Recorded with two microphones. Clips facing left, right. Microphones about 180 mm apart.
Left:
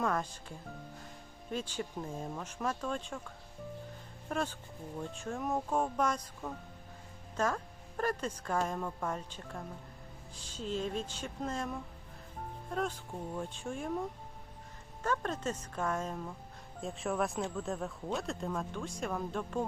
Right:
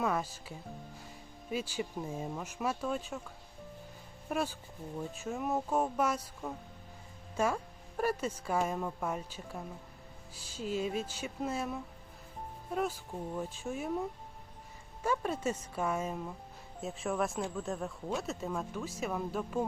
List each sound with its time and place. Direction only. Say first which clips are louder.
0.0 s speech: right 1 dB; 5° right (ahead or behind)